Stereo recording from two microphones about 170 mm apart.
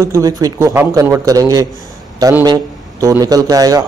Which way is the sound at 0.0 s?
20° right (ahead or behind).